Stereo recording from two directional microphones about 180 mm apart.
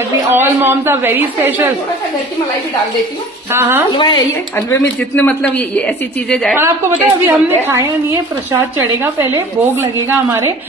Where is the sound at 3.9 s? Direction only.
25° left (ahead or behind); by 6.5 s 5° left (ahead or behind).